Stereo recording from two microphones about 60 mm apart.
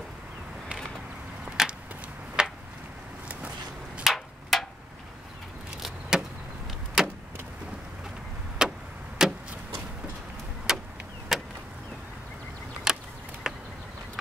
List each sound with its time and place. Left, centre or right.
1.6 s a sound: centre
4.0 s tick-tock: centre
5.8 s vehicle: centre
8.6 s clock: centre
9.2 s vehicle: centre
10.7 s vehicle: centre
12.9 s a sound: centre